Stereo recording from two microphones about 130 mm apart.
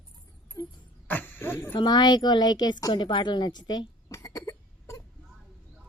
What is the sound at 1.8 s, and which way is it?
A woman's voice, 35° left (ahead or behind).